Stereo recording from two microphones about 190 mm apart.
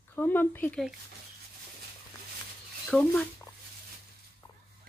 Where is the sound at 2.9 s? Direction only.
5° left (ahead or behind).